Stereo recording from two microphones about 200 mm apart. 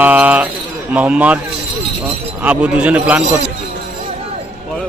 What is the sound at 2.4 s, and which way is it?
Speech, 5° right (ahead or behind).